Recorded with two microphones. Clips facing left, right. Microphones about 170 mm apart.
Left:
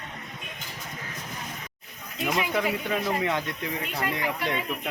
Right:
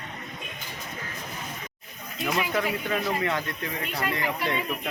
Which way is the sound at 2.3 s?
15° left (ahead or behind).